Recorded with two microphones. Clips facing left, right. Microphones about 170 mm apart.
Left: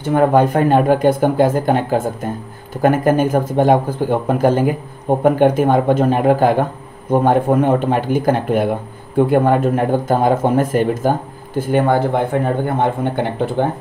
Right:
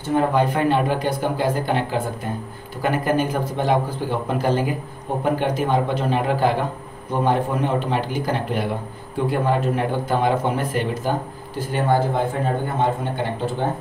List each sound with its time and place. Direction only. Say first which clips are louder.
0.1 s speech: left 6 dB; 55° left (ahead or behind)